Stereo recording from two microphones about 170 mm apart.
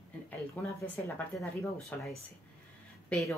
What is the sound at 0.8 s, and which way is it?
Speech, 10° left (ahead or behind).